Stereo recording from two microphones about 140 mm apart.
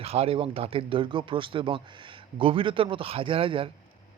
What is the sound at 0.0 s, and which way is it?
Speech, 45° right (ahead or behind).